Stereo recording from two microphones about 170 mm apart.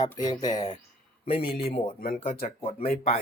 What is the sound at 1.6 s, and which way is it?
Speech, 35° left (ahead or behind).